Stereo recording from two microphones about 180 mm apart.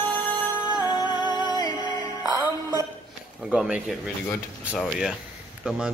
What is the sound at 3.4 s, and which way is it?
A man's voice, 5° right (ahead or behind).